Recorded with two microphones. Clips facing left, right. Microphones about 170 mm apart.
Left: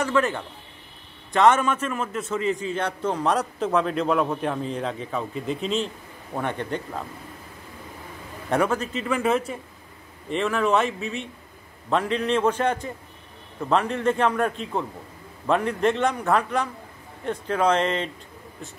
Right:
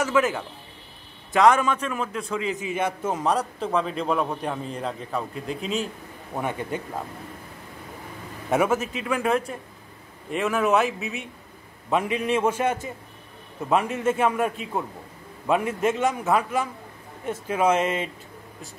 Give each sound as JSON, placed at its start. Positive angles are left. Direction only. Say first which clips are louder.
{"t": 0.0, "sound": "a man's voice", "louder": "right 1 dB", "side_deg": -5}
{"t": 8.5, "sound": "a man's voice", "louder": "right 1 dB", "side_deg": -5}